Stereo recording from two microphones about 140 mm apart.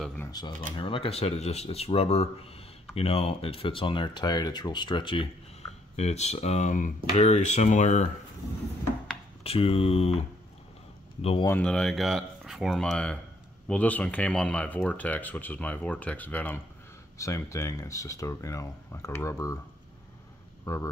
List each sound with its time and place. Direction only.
0.3 s speech: 25° left (ahead or behind)
0.7 s speech: 40° left (ahead or behind)
5.9 s speech: 50° left (ahead or behind)
9.4 s speech: 45° left (ahead or behind)
11.6 s speech: 5° left (ahead or behind); by 19.6 s 20° left (ahead or behind)
20.6 s speech: 20° left (ahead or behind)